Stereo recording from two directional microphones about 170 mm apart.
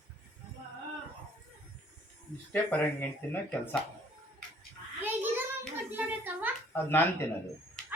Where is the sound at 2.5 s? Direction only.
10° left (ahead or behind).